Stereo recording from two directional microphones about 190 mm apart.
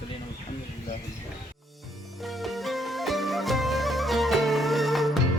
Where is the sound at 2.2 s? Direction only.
Centre (ahead or behind).